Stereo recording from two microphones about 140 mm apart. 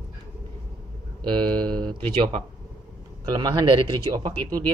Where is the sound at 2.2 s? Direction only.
40° right (ahead or behind).